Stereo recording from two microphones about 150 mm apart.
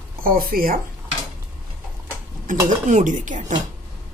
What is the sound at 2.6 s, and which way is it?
Dishes, 55° right (ahead or behind).